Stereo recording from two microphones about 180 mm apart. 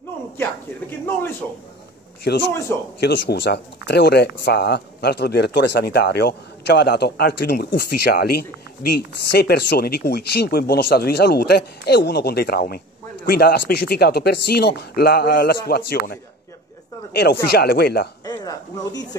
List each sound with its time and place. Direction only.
0.4 s speech: 10° left (ahead or behind)
2.3 s a man's voice: 65° left (ahead or behind)
17.1 s speech: 65° left (ahead or behind)
18.2 s speech: 20° left (ahead or behind)